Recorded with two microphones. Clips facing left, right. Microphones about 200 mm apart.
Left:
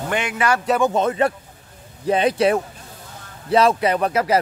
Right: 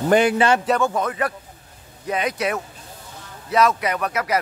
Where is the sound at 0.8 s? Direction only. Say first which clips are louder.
Left 4 dB; 25° left (ahead or behind).